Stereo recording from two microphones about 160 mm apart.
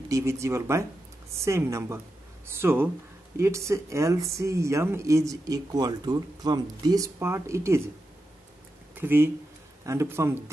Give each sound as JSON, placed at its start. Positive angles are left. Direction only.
{"t": 0.1, "sound": "speech", "side_deg": -15}
{"t": 8.9, "sound": "speech", "side_deg": -15}